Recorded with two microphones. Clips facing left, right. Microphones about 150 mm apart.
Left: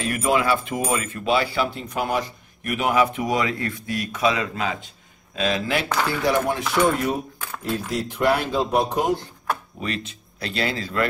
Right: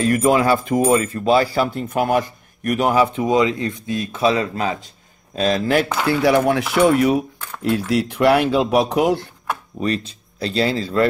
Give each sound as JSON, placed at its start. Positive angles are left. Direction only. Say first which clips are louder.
{"t": 0.0, "sound": "speech", "louder": "right 6 dB", "side_deg": -40}
{"t": 5.9, "sound": "speech", "louder": "right 4 dB", "side_deg": -15}
{"t": 6.2, "sound": "speech", "louder": "right 7 dB", "side_deg": -70}
{"t": 9.8, "sound": "speech", "louder": "right 7 dB", "side_deg": -35}